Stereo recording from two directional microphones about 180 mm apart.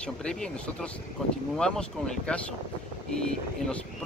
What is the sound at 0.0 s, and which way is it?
Speech, 5° left (ahead or behind).